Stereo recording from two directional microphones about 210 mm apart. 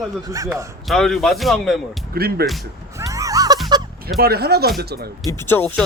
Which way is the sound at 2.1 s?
45° right (ahead or behind).